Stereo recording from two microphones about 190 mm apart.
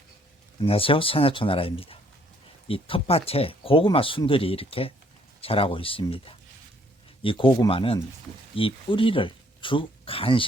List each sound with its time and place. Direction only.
0.6 s speech: 30° left (ahead or behind)